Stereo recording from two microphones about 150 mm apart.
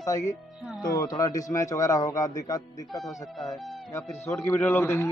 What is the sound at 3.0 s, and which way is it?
Speech, centre (ahead or behind).